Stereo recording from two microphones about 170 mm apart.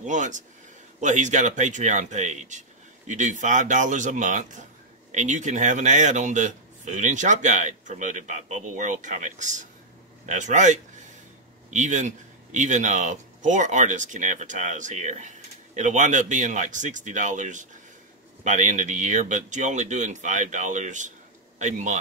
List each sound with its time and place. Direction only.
0.0 s speech: 45° right (ahead or behind)